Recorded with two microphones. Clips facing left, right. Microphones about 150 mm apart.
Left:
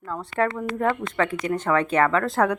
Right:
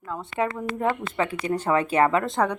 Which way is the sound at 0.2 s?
15° right (ahead or behind).